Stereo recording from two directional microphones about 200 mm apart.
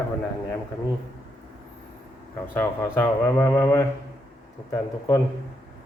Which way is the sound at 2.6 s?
10° left (ahead or behind).